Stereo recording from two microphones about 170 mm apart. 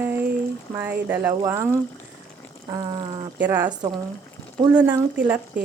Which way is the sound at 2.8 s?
25° right (ahead or behind).